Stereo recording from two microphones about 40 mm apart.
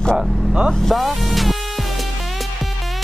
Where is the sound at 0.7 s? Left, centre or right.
Centre.